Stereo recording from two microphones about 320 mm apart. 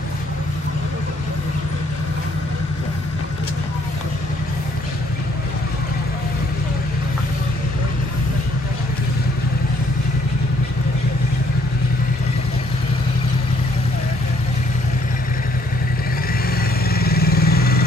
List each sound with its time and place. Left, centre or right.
16.9 s vehicle: left